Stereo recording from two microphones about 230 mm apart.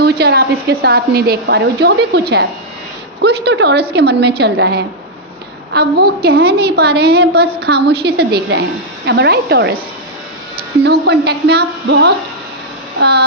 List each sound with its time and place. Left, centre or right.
0.0 s a woman's voice: right
10.8 s a woman's voice: right